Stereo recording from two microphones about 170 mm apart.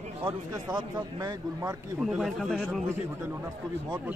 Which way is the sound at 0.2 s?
25° right (ahead or behind).